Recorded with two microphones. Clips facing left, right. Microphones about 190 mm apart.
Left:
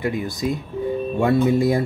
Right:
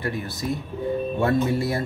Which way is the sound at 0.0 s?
15° left (ahead or behind).